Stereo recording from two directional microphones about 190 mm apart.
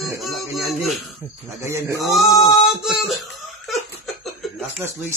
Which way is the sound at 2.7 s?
Centre (ahead or behind).